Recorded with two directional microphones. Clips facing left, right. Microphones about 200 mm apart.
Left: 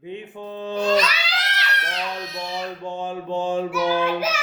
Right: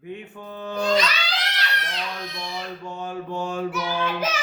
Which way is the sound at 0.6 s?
20° left (ahead or behind).